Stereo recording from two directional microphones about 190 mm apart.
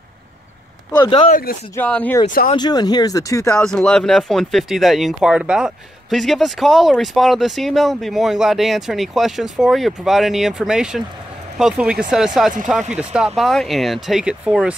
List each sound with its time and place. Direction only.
0.9 s speech: 25° left (ahead or behind)
1.3 s speech: 50° left (ahead or behind)
1.8 s speech: 10° left (ahead or behind)
2.2 s speech: 40° left (ahead or behind)
2.5 s speech: 20° left (ahead or behind)
3.5 s speech: 5° left (ahead or behind)